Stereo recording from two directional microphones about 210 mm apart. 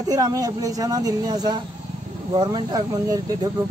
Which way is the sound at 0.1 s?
15° right (ahead or behind).